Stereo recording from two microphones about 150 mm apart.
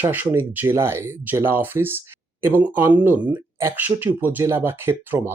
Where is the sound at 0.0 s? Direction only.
10° right (ahead or behind).